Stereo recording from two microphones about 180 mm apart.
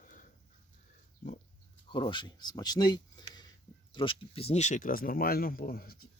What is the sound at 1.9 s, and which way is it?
Speech, 25° left (ahead or behind).